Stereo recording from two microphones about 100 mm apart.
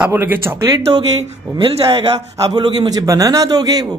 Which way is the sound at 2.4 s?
45° right (ahead or behind).